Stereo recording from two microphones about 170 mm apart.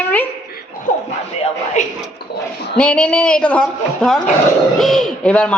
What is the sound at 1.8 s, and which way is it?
Speech, 45° left (ahead or behind).